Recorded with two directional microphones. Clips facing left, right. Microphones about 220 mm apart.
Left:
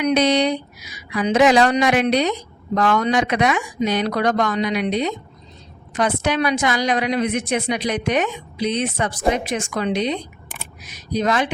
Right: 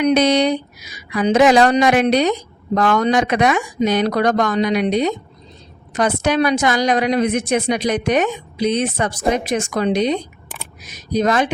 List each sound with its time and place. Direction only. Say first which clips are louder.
0.0 s a woman's voice: right 3 dB; 45° right (ahead or behind)